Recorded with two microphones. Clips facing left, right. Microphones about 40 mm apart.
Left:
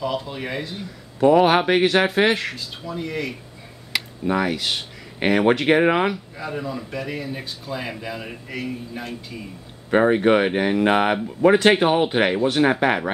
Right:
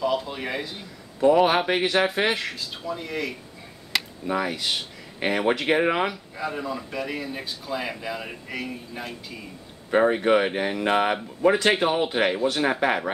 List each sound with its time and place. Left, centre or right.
0.0 s speech: centre
1.4 s speech: centre
4.5 s speech: centre
6.3 s speech: centre
9.9 s speech: centre